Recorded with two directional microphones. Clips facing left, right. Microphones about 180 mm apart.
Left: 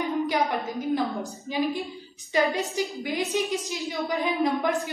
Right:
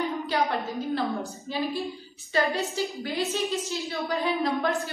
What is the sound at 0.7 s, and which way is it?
A woman's voice, 15° left (ahead or behind).